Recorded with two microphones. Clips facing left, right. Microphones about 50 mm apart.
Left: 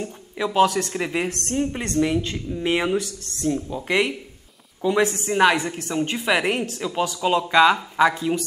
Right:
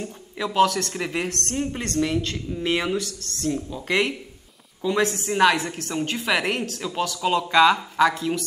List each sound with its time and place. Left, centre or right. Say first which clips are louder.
0.0 s speech: left 3 dB; centre
1.9 s speech: left 1 dB; centre